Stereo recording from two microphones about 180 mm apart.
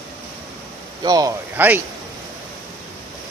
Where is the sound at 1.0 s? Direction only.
20° right (ahead or behind).